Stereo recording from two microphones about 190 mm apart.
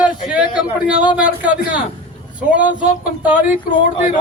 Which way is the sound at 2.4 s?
5° right (ahead or behind).